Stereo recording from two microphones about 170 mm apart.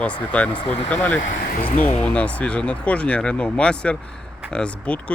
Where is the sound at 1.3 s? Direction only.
50° left (ahead or behind).